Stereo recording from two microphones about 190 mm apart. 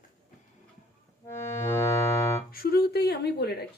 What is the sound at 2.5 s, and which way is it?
Speech, 55° left (ahead or behind).